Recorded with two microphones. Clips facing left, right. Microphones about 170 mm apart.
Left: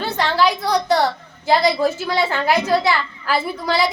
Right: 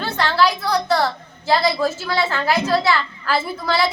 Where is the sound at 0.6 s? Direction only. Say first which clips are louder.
Left 2 dB; 15° left (ahead or behind).